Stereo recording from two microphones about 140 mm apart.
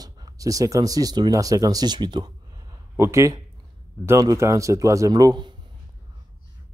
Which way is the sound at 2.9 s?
20° right (ahead or behind).